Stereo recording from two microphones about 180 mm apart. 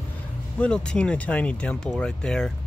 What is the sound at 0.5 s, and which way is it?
Speech, 5° left (ahead or behind).